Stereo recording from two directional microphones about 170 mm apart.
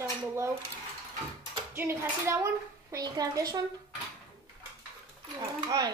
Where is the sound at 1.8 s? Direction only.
15° right (ahead or behind).